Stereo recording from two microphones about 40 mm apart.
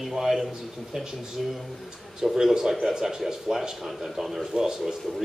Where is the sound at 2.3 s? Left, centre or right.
Centre.